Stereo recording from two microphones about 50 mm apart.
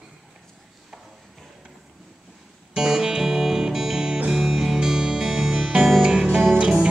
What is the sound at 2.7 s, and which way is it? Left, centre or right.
Music, centre.